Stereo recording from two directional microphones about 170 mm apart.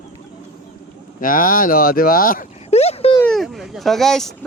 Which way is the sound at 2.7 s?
40° left (ahead or behind).